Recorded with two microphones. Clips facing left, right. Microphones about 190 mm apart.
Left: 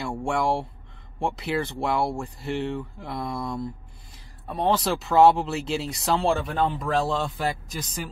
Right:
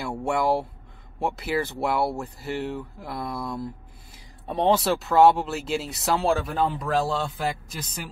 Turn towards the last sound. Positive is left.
turn(degrees=0)  # may be behind; listen again after turning